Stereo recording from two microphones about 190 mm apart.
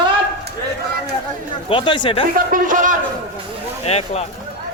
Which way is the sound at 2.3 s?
45° right (ahead or behind).